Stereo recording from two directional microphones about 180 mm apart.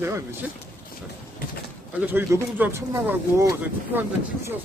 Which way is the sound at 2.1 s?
10° right (ahead or behind).